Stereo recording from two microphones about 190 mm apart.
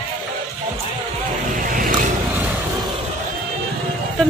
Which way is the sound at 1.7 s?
45° right (ahead or behind).